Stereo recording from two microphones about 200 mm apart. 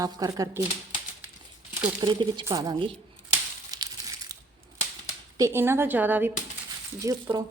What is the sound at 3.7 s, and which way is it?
Crumpling, 20° right (ahead or behind).